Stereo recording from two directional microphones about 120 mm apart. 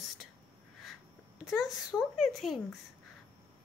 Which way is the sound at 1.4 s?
5° right (ahead or behind).